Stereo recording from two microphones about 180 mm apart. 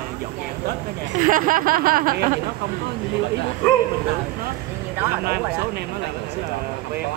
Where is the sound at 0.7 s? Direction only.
50° right (ahead or behind).